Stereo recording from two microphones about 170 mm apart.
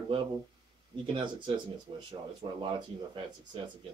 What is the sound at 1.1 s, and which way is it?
Speech, 30° right (ahead or behind).